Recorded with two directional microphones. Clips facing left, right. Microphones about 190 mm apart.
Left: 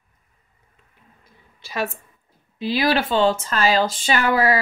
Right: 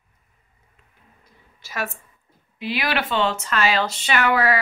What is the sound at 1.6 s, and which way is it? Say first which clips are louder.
A woman's voice: left 4 dB; 30° left (ahead or behind).